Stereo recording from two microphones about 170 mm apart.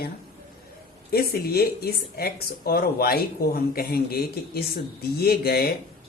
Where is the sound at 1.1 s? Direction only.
65° left (ahead or behind).